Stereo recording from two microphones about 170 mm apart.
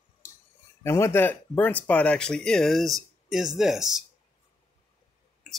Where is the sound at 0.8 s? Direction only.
15° left (ahead or behind); by 4.0 s centre (ahead or behind).